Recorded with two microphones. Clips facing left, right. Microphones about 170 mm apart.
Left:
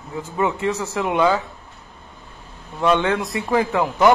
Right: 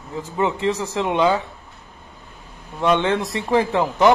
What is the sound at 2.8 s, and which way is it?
Speech, 25° right (ahead or behind).